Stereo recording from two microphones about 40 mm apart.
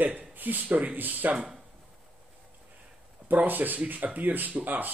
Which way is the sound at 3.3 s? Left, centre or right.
Right.